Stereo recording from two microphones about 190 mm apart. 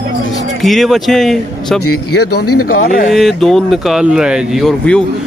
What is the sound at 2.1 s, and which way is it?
Speech, 50° left (ahead or behind).